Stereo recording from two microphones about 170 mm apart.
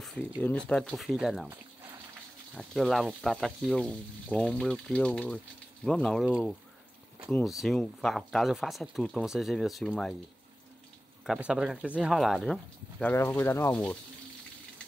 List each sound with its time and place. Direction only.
0.0 s speech: 5° left (ahead or behind)
2.5 s speech: centre (ahead or behind)
11.2 s speech: 5° right (ahead or behind)